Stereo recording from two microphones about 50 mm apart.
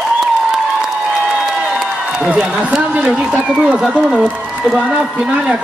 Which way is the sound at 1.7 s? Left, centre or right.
Right.